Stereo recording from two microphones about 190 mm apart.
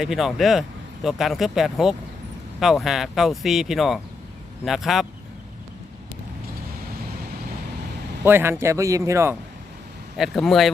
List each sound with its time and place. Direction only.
0.0 s speech: centre (ahead or behind)
8.2 s a man's voice: 10° right (ahead or behind)
10.2 s speech: centre (ahead or behind)